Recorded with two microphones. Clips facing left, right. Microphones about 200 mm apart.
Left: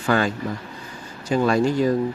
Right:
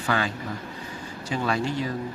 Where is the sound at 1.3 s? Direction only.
45° left (ahead or behind).